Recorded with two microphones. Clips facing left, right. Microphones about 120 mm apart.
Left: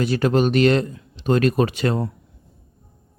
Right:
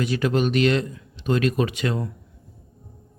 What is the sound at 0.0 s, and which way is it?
Speech, 40° left (ahead or behind).